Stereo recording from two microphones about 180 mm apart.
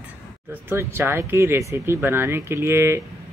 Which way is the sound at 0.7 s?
10° right (ahead or behind).